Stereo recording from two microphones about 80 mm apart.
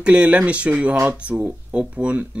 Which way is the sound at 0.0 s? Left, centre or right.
Centre.